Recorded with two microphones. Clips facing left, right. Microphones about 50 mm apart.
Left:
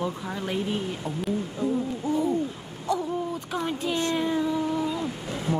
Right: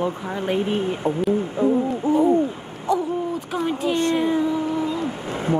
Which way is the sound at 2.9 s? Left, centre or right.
Centre.